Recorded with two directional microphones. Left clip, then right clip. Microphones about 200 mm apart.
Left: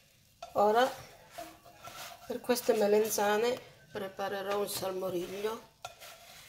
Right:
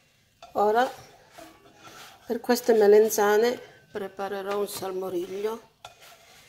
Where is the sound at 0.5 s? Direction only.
25° right (ahead or behind).